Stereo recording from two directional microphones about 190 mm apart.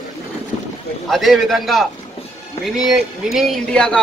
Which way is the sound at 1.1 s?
Centre (ahead or behind).